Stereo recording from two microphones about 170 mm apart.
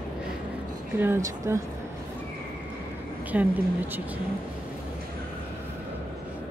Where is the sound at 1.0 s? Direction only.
15° right (ahead or behind).